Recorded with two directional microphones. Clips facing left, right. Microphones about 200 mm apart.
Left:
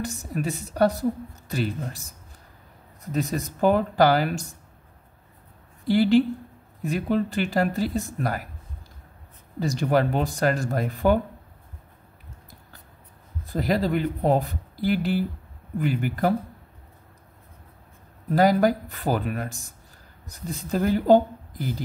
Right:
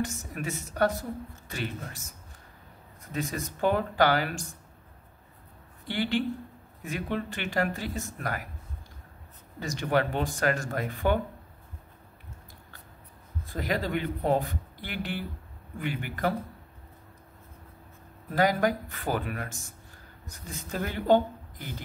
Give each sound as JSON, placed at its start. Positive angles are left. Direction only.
{"t": 0.0, "sound": "speech", "side_deg": 35}
{"t": 3.1, "sound": "speech", "side_deg": 35}
{"t": 5.9, "sound": "speech", "side_deg": 40}
{"t": 9.6, "sound": "speech", "side_deg": 35}
{"t": 13.5, "sound": "speech", "side_deg": 35}
{"t": 18.3, "sound": "speech", "side_deg": 35}